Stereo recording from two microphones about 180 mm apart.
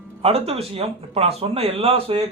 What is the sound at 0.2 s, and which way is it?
A man's voice, 35° right (ahead or behind).